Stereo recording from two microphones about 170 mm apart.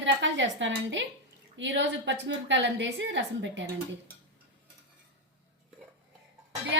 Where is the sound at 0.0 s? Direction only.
90° right.